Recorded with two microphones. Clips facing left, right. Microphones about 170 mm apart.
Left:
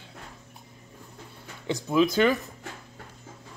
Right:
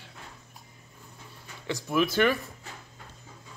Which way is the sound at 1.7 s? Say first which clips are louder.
Left 4 dB; 20° left (ahead or behind).